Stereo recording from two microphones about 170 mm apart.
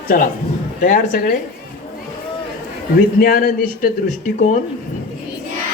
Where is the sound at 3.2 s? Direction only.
60° left (ahead or behind).